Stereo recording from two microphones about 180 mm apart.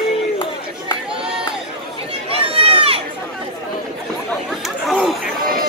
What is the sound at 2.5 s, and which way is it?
Run, 30° right (ahead or behind).